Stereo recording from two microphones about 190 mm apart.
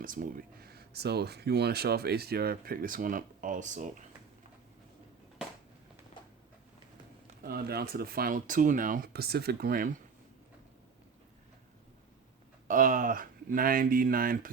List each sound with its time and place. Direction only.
0.0 s speech: 45° right (ahead or behind)
7.4 s speech: 55° right (ahead or behind)
12.6 s speech: 45° right (ahead or behind)